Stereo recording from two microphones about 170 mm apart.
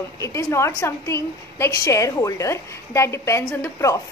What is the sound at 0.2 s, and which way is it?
A woman's voice, 15° left (ahead or behind).